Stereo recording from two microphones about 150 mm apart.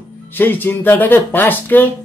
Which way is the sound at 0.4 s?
15° left (ahead or behind).